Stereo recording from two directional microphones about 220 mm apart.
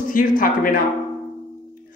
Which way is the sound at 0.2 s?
40° left (ahead or behind).